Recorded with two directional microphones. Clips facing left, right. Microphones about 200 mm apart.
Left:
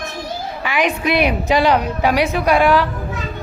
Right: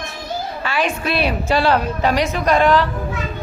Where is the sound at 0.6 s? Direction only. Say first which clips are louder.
Left 4 dB; 15° left (ahead or behind).